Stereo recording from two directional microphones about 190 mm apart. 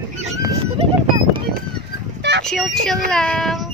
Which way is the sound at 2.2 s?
65° right (ahead or behind).